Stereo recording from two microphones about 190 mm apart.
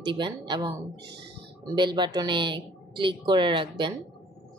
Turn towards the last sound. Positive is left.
turn(degrees=-25)  # may be behind; listen again after turning